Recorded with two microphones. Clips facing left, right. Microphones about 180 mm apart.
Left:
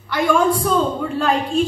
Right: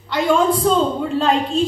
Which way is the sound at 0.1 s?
25° right (ahead or behind).